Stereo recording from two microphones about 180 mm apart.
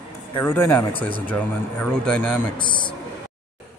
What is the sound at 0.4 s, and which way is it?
A man's voice, 10° left (ahead or behind).